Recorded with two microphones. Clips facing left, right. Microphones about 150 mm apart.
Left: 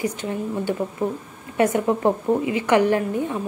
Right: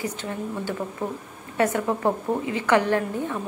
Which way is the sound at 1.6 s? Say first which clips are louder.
Left 4 dB; 20° left (ahead or behind).